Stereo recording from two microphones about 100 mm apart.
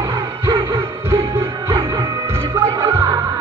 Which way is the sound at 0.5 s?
30° right (ahead or behind).